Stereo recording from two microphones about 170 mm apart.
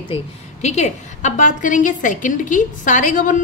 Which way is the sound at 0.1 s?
40° left (ahead or behind).